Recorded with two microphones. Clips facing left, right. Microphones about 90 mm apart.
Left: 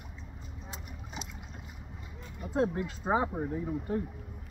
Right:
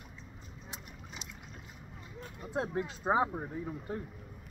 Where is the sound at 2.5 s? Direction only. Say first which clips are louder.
Left 5 dB; 15° right (ahead or behind).